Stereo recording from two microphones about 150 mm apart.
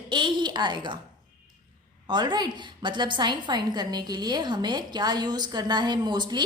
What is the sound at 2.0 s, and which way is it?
A woman's voice, 30° right (ahead or behind).